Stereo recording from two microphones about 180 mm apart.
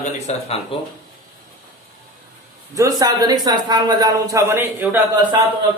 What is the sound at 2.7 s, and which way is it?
A man's voice, 20° right (ahead or behind).